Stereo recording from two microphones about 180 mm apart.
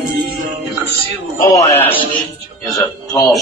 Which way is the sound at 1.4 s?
20° left (ahead or behind).